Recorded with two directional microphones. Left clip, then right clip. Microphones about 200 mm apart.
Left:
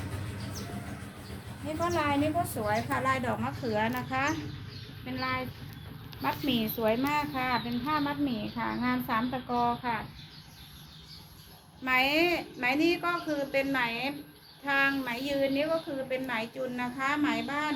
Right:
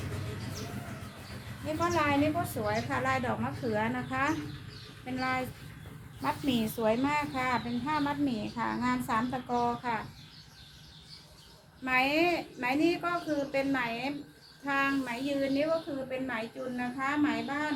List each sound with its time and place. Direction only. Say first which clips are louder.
1.8 s a woman's voice: even; 20° right (ahead or behind)
6.2 s a woman's voice: left 1 dB; 5° left (ahead or behind)
11.9 s a woman's voice: left 1 dB; 5° right (ahead or behind)